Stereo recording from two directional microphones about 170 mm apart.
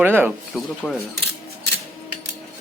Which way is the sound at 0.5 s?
Centre (ahead or behind).